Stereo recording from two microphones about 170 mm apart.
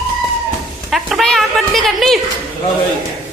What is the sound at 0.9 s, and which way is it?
A woman's voice, centre (ahead or behind).